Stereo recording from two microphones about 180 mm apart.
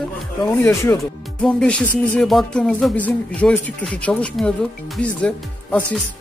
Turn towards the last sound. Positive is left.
turn(degrees=5)  # may be behind; listen again after turning